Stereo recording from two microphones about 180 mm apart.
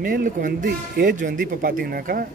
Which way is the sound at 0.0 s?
50° right (ahead or behind).